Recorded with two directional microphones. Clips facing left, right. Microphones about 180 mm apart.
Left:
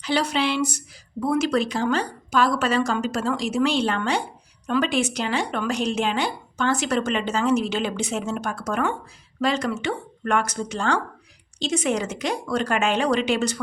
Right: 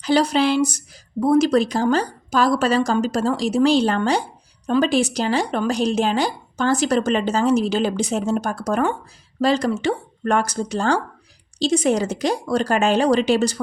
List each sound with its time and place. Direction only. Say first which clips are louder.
0.0 s speech: right 6 dB; 40° right (ahead or behind)